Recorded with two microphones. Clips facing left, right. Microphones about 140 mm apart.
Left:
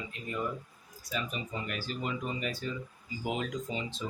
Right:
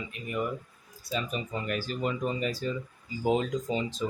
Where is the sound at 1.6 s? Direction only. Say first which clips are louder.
Right 7 dB; 45° right (ahead or behind).